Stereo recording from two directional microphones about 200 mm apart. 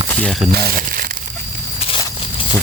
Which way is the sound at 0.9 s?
45° right (ahead or behind).